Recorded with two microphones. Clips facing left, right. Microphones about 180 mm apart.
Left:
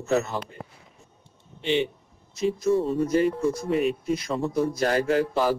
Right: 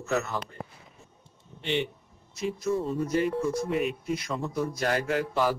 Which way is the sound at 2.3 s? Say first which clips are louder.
Left 6 dB; 30° left (ahead or behind).